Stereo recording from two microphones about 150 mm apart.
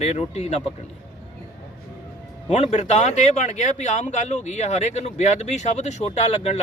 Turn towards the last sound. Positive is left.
turn(degrees=45)  # may be behind; listen again after turning